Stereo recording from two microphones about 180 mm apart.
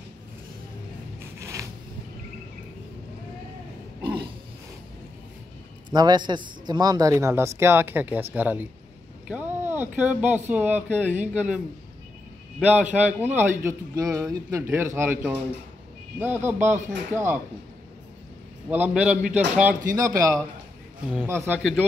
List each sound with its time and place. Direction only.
1.4 s zipper: 15° right (ahead or behind)
4.0 s a sound: 25° right (ahead or behind)
5.9 s a man's voice: 25° right (ahead or behind)
18.7 s a man's voice: 5° right (ahead or behind)
20.0 s a man's voice: 20° right (ahead or behind)